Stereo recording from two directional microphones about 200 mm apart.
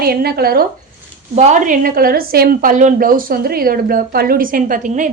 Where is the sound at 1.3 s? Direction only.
40° right (ahead or behind).